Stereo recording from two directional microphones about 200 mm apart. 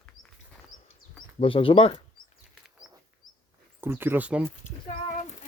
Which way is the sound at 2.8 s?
Centre (ahead or behind).